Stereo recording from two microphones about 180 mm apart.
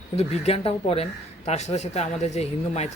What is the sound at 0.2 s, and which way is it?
Speech, 35° left (ahead or behind).